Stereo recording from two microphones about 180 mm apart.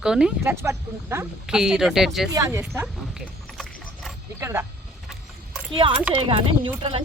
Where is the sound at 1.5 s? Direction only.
5° right (ahead or behind).